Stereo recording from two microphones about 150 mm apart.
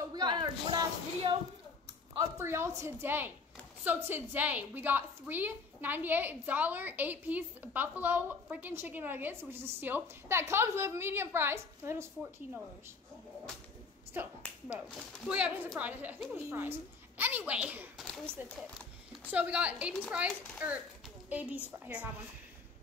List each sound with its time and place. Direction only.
0.1 s a sound: 30° right (ahead or behind)
2.1 s a woman's voice: 15° right (ahead or behind)
14.2 s a woman's voice: 10° right (ahead or behind)
19.3 s a woman's voice: 10° right (ahead or behind)